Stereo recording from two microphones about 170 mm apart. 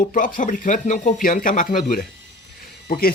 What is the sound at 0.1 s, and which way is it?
Speech, 50° left (ahead or behind).